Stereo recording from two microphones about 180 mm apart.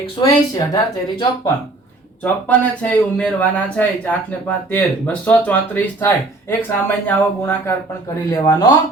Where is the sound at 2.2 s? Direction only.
10° left (ahead or behind).